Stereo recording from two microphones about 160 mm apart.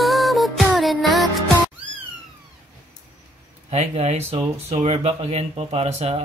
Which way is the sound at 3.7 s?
45° right (ahead or behind).